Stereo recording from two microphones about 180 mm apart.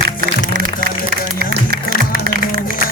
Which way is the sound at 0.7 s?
50° left (ahead or behind).